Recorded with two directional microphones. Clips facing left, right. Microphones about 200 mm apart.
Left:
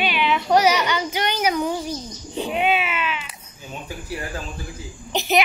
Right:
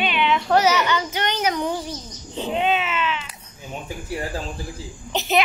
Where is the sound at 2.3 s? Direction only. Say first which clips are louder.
Even; 10° left (ahead or behind).